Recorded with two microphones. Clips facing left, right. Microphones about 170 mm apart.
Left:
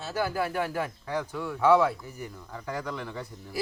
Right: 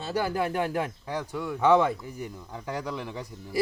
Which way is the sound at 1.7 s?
5° left (ahead or behind).